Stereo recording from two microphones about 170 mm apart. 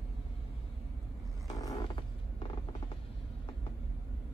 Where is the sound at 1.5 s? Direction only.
20° left (ahead or behind).